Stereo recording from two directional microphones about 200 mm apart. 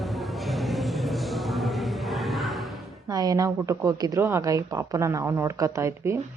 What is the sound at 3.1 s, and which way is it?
A woman's voice, 20° right (ahead or behind).